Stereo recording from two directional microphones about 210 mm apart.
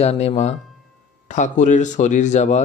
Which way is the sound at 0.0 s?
30° left (ahead or behind).